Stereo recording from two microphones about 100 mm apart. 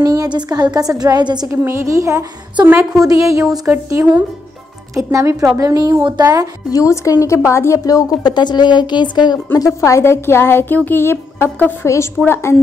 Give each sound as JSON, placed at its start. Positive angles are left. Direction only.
{"t": 0.0, "sound": "a woman's voice", "side_deg": -40}
{"t": 1.5, "sound": "a woman's voice", "side_deg": -25}
{"t": 6.7, "sound": "a woman's voice", "side_deg": 35}
{"t": 9.5, "sound": "a woman's voice", "side_deg": 30}